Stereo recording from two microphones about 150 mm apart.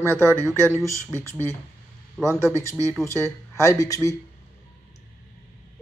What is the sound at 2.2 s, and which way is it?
Speech, 5° left (ahead or behind).